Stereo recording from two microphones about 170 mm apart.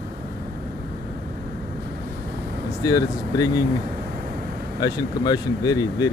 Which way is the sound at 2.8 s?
20° left (ahead or behind).